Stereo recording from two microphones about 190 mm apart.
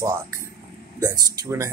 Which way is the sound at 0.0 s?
15° right (ahead or behind).